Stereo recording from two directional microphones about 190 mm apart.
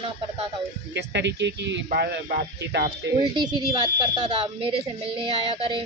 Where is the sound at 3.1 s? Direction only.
25° right (ahead or behind).